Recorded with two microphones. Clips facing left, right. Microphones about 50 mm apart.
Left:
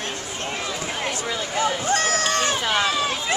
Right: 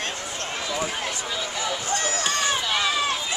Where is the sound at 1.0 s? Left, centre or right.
Left.